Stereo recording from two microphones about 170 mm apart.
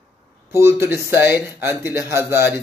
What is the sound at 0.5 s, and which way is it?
Speech, 15° right (ahead or behind).